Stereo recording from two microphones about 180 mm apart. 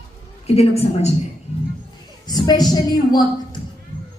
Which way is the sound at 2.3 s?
20° left (ahead or behind).